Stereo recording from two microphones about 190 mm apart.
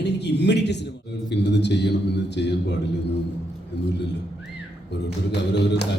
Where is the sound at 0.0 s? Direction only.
65° left (ahead or behind).